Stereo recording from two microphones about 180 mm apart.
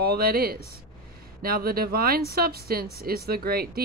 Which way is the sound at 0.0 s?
60° right (ahead or behind).